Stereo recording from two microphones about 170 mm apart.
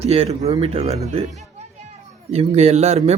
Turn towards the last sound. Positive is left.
turn(degrees=-40)  # may be behind; listen again after turning